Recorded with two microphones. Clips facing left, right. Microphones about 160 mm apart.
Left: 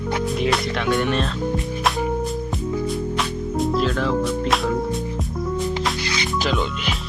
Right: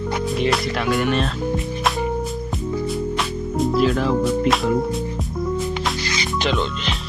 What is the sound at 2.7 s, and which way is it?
Music, 5° right (ahead or behind).